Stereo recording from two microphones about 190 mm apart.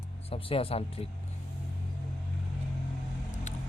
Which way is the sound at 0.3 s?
30° left (ahead or behind).